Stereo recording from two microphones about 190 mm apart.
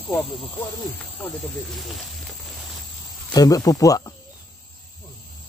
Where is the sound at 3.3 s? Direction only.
20° left (ahead or behind).